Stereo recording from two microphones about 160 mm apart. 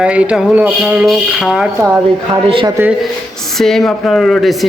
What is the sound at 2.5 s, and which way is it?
Speech, 35° right (ahead or behind).